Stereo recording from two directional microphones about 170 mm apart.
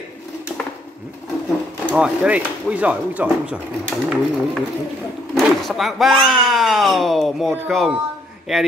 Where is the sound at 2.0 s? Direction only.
5° right (ahead or behind).